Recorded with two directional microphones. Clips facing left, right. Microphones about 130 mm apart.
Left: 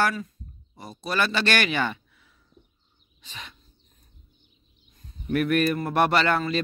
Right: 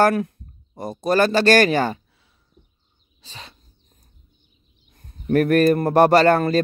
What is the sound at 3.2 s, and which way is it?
Bird, 30° right (ahead or behind).